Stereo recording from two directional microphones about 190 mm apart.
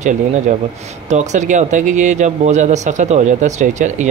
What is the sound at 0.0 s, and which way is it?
Speech, 40° right (ahead or behind).